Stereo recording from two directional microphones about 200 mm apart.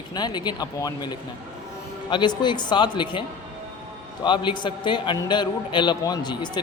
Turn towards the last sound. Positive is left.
turn(degrees=20)  # may be behind; listen again after turning